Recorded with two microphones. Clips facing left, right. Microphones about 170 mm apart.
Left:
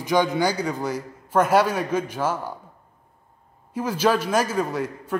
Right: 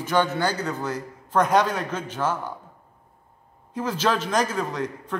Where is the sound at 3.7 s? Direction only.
10° left (ahead or behind).